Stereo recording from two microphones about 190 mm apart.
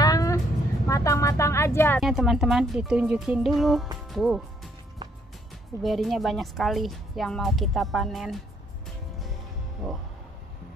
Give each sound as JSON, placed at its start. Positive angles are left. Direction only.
{"t": 0.0, "sound": "a sound", "side_deg": 20}
{"t": 0.8, "sound": "vehicle", "side_deg": 15}
{"t": 2.0, "sound": "speech", "side_deg": 0}
{"t": 5.8, "sound": "speech", "side_deg": 0}